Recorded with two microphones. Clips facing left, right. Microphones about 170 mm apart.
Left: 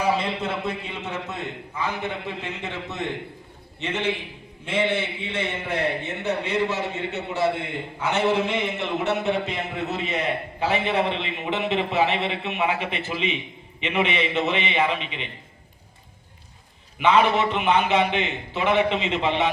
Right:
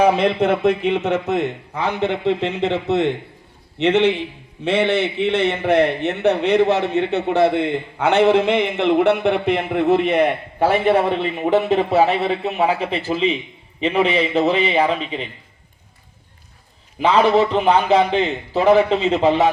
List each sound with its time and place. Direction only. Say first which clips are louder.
0.0 s a man's voice: right 9 dB; 65° right (ahead or behind); by 15.3 s 35° right (ahead or behind)
17.0 s a man's voice: right 4 dB; 35° right (ahead or behind)